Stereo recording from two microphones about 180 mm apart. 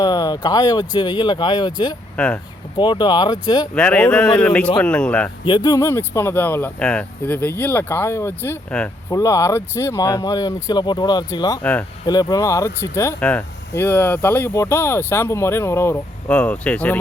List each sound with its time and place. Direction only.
0.0 s speech: 20° left (ahead or behind)
2.1 s speech: 5° left (ahead or behind)
2.7 s speech: 25° left (ahead or behind)
3.8 s speech: 5° left (ahead or behind)
5.5 s speech: 25° left (ahead or behind)
11.6 s speech: 10° left (ahead or behind)
12.0 s speech: 20° left (ahead or behind)